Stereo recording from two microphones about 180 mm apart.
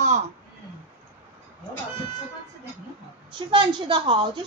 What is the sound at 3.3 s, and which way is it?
A woman's voice, 25° right (ahead or behind).